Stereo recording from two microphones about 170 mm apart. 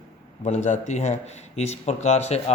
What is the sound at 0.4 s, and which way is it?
Speech, 40° left (ahead or behind).